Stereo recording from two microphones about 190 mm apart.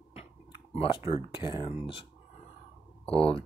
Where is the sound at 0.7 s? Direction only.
30° left (ahead or behind).